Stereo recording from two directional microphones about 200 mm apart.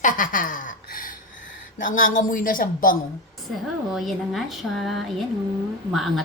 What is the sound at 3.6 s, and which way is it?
Speech, centre (ahead or behind).